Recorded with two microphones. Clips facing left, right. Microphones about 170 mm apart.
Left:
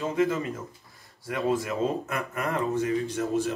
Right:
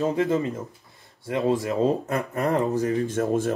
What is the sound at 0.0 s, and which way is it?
Speech, 35° right (ahead or behind).